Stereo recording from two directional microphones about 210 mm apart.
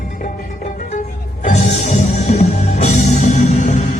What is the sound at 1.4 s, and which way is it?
Music, 35° left (ahead or behind).